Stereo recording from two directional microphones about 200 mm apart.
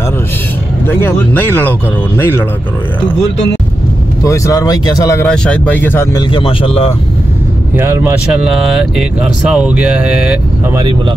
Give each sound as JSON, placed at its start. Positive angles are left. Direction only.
{"t": 0.8, "sound": "speech", "side_deg": 10}
{"t": 4.2, "sound": "speech", "side_deg": 15}
{"t": 5.2, "sound": "speech", "side_deg": 5}
{"t": 6.3, "sound": "a man's voice", "side_deg": 25}
{"t": 7.7, "sound": "speech", "side_deg": -10}
{"t": 8.3, "sound": "speech", "side_deg": 0}